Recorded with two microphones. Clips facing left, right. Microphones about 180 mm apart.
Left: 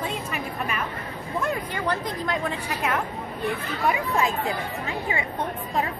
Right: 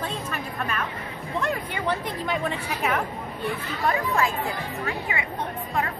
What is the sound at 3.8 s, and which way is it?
Speech, 15° left (ahead or behind).